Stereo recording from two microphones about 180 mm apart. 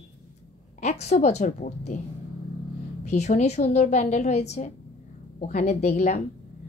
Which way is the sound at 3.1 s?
40° left (ahead or behind).